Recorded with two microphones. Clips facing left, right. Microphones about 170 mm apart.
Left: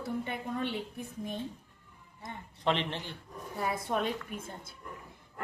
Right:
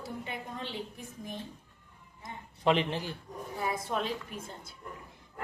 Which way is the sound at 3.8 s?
55° left (ahead or behind).